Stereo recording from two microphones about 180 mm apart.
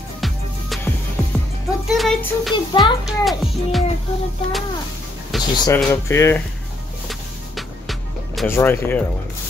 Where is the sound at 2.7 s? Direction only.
25° left (ahead or behind).